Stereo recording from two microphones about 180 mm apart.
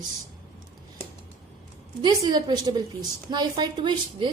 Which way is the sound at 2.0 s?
25° right (ahead or behind).